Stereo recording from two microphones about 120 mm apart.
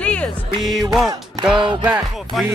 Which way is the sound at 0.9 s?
Centre (ahead or behind).